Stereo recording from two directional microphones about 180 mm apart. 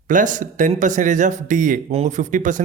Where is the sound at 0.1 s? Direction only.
45° right (ahead or behind).